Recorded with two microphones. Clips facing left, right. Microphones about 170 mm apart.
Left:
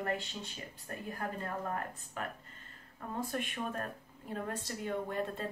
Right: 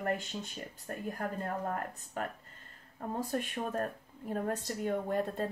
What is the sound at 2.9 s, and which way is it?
Speech, 40° right (ahead or behind).